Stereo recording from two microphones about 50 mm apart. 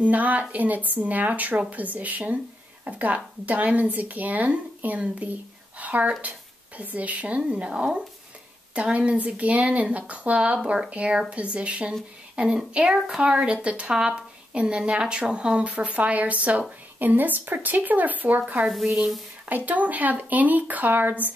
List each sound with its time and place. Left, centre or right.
0.0 s speech: right
13.9 s a sound: centre
14.6 s speech: right
15.7 s speech: right
19.4 s speech: right